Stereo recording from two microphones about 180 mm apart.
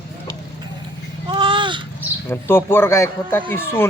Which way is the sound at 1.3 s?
25° right (ahead or behind).